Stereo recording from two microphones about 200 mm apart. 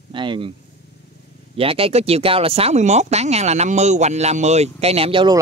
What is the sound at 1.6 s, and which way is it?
Speech, 30° right (ahead or behind).